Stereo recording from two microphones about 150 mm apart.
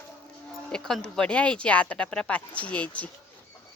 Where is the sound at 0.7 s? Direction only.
5° left (ahead or behind).